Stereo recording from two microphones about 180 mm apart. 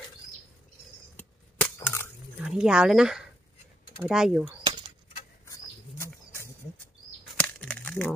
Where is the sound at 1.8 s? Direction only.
15° left (ahead or behind).